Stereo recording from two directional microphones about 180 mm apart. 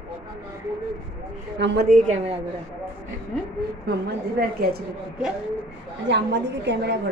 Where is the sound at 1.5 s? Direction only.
80° right.